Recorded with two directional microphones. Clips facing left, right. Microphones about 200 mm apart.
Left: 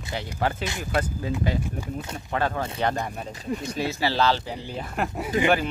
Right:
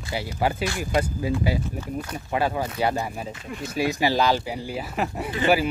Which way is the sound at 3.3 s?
40° left (ahead or behind).